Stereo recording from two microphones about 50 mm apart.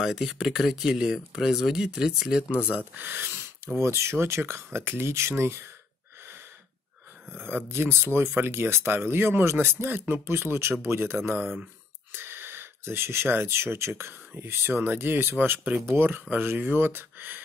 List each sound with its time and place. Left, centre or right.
0.0 s speech: centre
2.5 s speech: right
2.8 s speech: right
3.7 s speech: right
7.3 s speech: right